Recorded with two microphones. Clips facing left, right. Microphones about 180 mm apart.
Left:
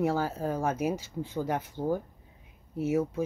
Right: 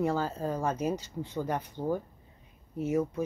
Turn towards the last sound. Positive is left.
turn(degrees=10)  # may be behind; listen again after turning